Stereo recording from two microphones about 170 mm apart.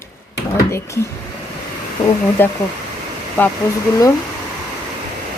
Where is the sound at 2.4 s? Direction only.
10° left (ahead or behind).